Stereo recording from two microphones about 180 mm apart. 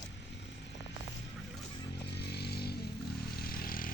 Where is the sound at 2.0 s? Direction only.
65° left (ahead or behind).